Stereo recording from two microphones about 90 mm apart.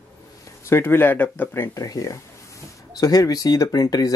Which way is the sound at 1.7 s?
40° left (ahead or behind).